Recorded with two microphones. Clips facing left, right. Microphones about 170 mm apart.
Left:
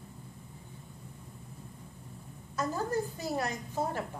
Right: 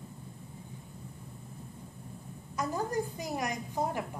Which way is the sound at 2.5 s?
15° right (ahead or behind).